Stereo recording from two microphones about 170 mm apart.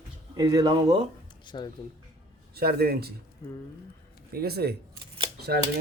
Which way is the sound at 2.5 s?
65° right (ahead or behind).